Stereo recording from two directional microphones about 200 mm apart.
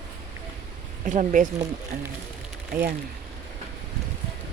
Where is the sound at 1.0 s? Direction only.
40° right (ahead or behind).